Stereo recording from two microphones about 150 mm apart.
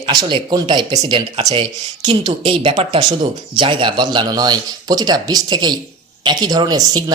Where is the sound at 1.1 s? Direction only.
40° right (ahead or behind).